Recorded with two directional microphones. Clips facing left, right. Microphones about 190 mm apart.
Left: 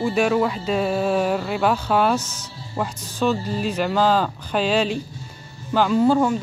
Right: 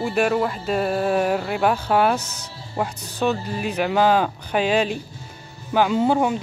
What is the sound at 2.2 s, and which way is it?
Speech, 60° right (ahead or behind).